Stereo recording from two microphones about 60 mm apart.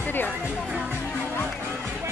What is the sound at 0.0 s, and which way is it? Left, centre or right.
Music, left.